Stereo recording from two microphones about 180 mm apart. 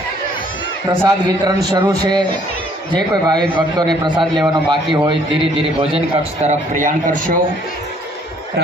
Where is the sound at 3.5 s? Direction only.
25° right (ahead or behind).